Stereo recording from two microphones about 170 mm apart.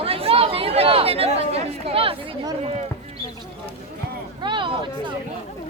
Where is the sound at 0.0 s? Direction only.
35° right (ahead or behind).